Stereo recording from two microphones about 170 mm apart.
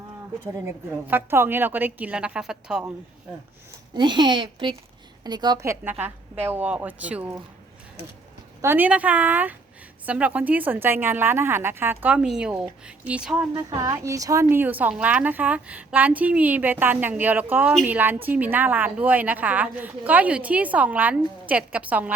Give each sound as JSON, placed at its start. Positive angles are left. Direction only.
{"t": 0.5, "sound": "a woman's voice", "side_deg": -15}
{"t": 3.9, "sound": "a woman's voice", "side_deg": -25}
{"t": 8.6, "sound": "a woman's voice", "side_deg": -10}
{"t": 13.5, "sound": "a woman's voice", "side_deg": -25}